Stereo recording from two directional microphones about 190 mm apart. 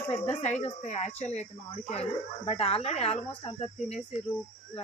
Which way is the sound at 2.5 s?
30° left (ahead or behind).